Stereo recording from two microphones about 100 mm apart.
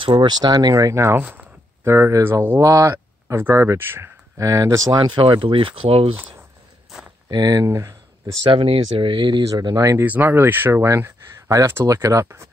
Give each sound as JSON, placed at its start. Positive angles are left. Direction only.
{"t": 0.0, "sound": "speech", "side_deg": -50}
{"t": 2.6, "sound": "speech", "side_deg": -35}
{"t": 4.4, "sound": "speech", "side_deg": -35}
{"t": 5.2, "sound": "speech", "side_deg": -60}
{"t": 7.2, "sound": "speech", "side_deg": -40}
{"t": 7.6, "sound": "speech", "side_deg": -30}
{"t": 8.5, "sound": "speech", "side_deg": -70}
{"t": 9.5, "sound": "speech", "side_deg": -40}
{"t": 9.8, "sound": "speech", "side_deg": -30}
{"t": 10.0, "sound": "speech", "side_deg": -20}